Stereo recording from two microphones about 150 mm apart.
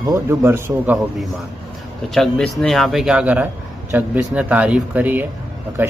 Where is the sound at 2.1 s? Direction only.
Centre (ahead or behind).